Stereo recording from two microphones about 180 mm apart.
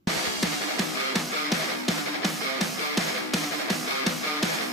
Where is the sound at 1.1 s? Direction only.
Centre (ahead or behind).